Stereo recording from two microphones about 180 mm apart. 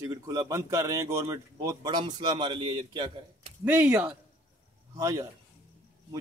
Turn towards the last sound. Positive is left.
turn(degrees=-20)  # may be behind; listen again after turning